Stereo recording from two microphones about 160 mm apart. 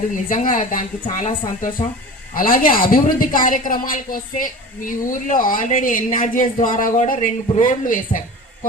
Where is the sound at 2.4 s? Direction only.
60° left (ahead or behind).